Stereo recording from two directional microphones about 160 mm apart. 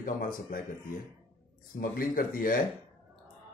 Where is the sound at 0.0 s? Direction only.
60° left (ahead or behind).